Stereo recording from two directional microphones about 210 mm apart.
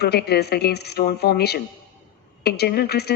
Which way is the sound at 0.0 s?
50° left (ahead or behind).